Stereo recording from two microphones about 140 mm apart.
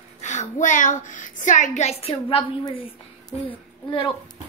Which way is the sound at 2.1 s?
35° left (ahead or behind).